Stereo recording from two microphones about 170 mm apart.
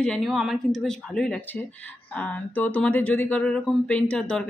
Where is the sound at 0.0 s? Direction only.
Centre (ahead or behind).